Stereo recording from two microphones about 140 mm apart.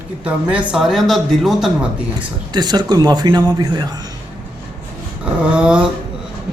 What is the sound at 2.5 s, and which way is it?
A man's voice, 30° right (ahead or behind).